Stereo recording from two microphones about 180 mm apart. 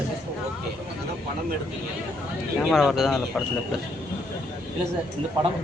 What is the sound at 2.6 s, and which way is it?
Speech, centre (ahead or behind).